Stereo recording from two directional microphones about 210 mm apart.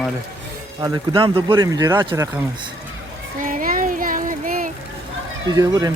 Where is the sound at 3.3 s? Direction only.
40° right (ahead or behind).